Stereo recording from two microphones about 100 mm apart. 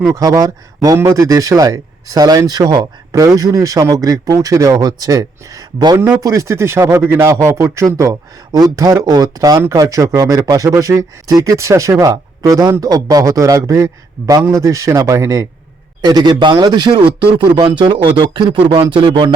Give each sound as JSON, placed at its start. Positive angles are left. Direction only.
{"t": 0.1, "sound": "speech", "side_deg": -35}
{"t": 16.0, "sound": "a man's voice", "side_deg": -40}